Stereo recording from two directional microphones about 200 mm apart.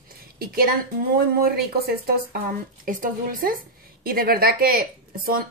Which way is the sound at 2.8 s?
45° right (ahead or behind).